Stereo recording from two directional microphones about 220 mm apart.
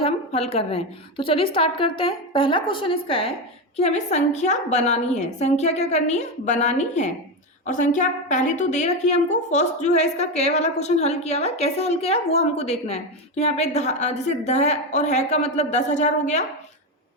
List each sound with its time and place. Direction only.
0.0 s a woman's voice: 30° left (ahead or behind)